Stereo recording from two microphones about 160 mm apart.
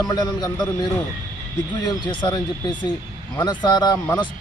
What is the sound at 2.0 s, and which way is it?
A man's voice, 25° left (ahead or behind).